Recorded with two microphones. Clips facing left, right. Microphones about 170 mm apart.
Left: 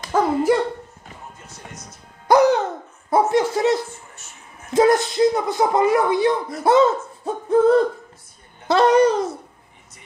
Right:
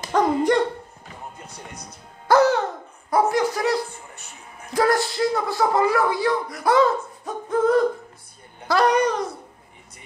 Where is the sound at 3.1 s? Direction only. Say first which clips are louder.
Left 2 dB; 25° left (ahead or behind).